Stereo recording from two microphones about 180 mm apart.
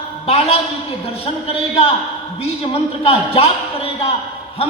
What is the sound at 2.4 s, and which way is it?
A man's voice, 30° left (ahead or behind).